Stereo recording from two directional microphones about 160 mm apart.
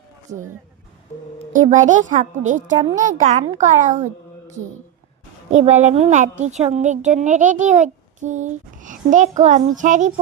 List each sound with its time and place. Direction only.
0.3 s a woman's voice: 50° right (ahead or behind)
1.6 s a woman's voice: 50° right (ahead or behind)
5.6 s a woman's voice: 45° right (ahead or behind)